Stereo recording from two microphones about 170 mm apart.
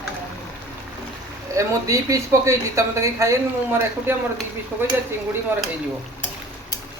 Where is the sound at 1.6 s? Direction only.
20° right (ahead or behind).